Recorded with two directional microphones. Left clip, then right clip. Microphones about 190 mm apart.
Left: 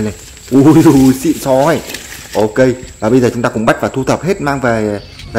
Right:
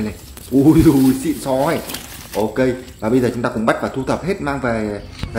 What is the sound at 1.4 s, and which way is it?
A man's voice, 35° left (ahead or behind).